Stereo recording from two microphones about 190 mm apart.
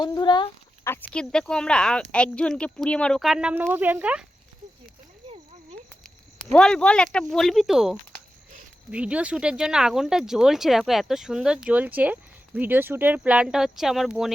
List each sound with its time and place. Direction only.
0.0 s speech: 20° left (ahead or behind)
1.1 s speech: 5° left (ahead or behind)
6.5 s speech: 5° left (ahead or behind)